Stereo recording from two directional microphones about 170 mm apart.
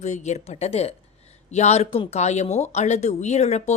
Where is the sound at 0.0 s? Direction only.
45° left (ahead or behind).